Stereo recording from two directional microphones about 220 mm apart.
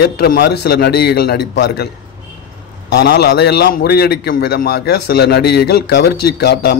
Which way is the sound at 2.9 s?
45° left (ahead or behind).